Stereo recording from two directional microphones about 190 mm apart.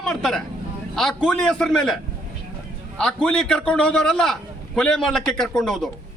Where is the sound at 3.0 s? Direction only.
5° left (ahead or behind).